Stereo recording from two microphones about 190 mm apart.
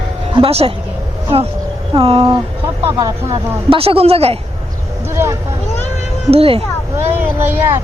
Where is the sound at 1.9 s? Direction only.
30° right (ahead or behind).